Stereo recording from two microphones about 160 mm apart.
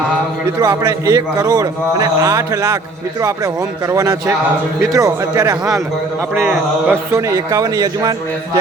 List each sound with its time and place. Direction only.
0.6 s a man's voice: 20° right (ahead or behind)
6.3 s a man's voice: 10° right (ahead or behind)